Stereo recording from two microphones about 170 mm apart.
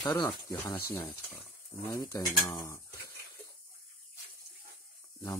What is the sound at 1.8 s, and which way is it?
Speech, 20° left (ahead or behind).